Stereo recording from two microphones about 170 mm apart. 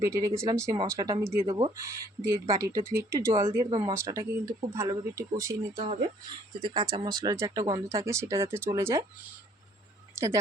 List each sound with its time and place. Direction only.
0.0 s speech: 20° right (ahead or behind)
1.5 s speech: 30° right (ahead or behind)
2.2 s speech: 20° right (ahead or behind)
5.8 s speech: 40° right (ahead or behind)
6.7 s speech: 25° right (ahead or behind)